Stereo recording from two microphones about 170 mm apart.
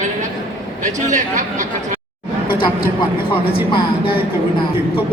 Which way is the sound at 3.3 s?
30° left (ahead or behind).